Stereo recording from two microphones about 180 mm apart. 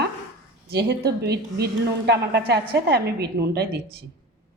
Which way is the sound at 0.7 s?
65° right (ahead or behind).